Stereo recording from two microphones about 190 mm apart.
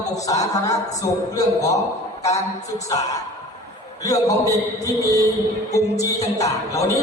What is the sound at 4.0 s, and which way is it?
A man's voice, 20° left (ahead or behind).